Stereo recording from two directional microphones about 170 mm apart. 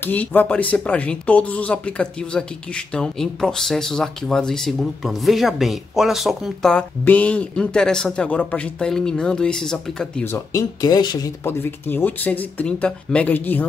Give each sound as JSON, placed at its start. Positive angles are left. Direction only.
{"t": 0.0, "sound": "speech", "side_deg": 10}
{"t": 10.2, "sound": "speech", "side_deg": 20}
{"t": 11.4, "sound": "speech", "side_deg": 10}